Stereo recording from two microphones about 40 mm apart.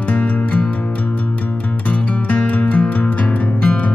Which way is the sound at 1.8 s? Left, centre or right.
Left.